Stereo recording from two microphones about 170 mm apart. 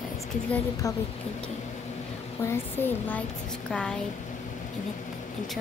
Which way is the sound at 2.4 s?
15° left (ahead or behind).